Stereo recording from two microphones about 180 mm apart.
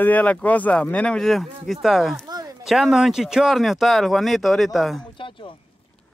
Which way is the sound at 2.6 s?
Centre (ahead or behind).